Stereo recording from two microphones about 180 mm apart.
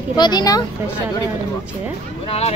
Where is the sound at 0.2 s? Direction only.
20° left (ahead or behind).